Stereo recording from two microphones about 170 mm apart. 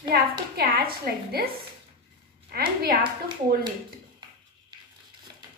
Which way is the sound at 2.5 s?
65° right (ahead or behind).